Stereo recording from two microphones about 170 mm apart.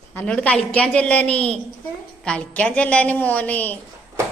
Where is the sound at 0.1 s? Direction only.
10° left (ahead or behind).